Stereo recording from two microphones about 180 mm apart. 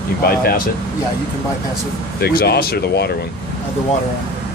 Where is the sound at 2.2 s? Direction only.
60° left (ahead or behind).